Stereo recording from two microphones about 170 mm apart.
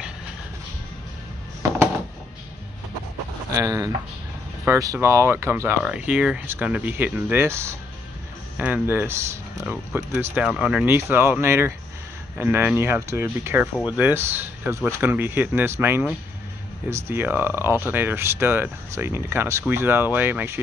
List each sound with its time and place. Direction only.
3.5 s speech: 20° right (ahead or behind)